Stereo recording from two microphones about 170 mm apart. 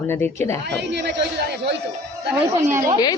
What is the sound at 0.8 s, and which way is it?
Speech, 90° right.